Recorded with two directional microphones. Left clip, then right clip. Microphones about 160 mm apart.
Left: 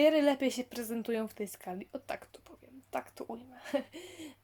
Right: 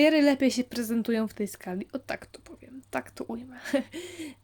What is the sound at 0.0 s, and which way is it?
Speech, 30° right (ahead or behind).